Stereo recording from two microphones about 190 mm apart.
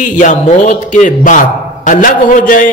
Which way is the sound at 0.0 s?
40° left (ahead or behind).